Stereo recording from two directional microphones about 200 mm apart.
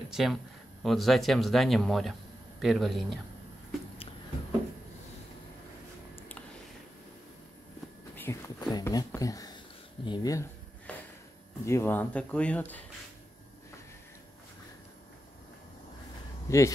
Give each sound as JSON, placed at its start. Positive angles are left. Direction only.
{"t": 0.1, "sound": "speech", "side_deg": 0}
{"t": 8.2, "sound": "a sound", "side_deg": 15}
{"t": 8.7, "sound": "speech", "side_deg": 15}
{"t": 10.0, "sound": "a sound", "side_deg": 20}
{"t": 11.6, "sound": "speech", "side_deg": 15}
{"t": 16.4, "sound": "speech", "side_deg": 15}